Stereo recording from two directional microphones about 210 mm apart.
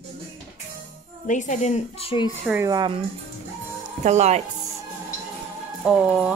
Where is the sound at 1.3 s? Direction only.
35° left (ahead or behind).